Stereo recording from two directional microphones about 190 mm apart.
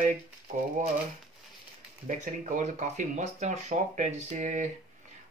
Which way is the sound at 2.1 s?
40° right (ahead or behind).